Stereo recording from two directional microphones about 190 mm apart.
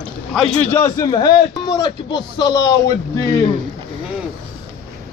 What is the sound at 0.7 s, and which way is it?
A man's voice, 15° left (ahead or behind).